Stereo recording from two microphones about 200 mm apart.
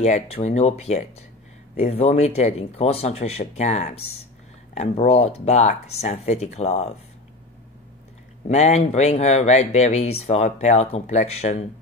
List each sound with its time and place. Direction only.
0.0 s speech: 35° left (ahead or behind)
8.5 s speech: 35° left (ahead or behind)